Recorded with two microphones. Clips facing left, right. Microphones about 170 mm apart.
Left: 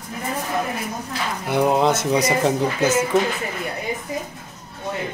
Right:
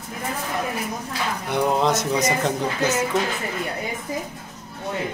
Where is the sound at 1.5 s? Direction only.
5° left (ahead or behind).